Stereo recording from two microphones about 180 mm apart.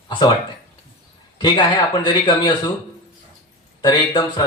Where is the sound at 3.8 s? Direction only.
25° left (ahead or behind).